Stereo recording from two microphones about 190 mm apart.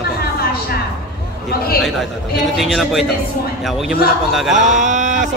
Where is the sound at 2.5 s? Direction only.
Centre (ahead or behind).